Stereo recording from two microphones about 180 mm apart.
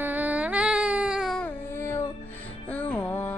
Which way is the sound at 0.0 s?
10° right (ahead or behind).